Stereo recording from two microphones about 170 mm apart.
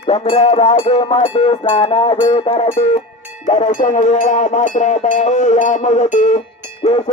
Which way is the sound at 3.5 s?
45° left (ahead or behind).